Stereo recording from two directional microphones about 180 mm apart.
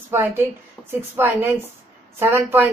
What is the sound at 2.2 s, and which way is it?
Speech, 10° right (ahead or behind).